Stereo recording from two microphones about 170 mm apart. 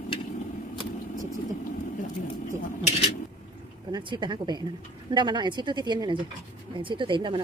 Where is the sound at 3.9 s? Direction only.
25° right (ahead or behind).